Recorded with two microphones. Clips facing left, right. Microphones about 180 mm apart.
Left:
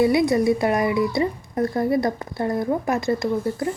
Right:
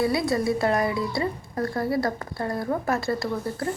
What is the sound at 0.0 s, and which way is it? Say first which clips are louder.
Speech: left 6 dB; 20° left (ahead or behind).